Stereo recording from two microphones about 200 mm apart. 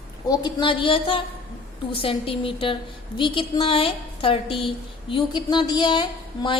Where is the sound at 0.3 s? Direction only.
25° left (ahead or behind).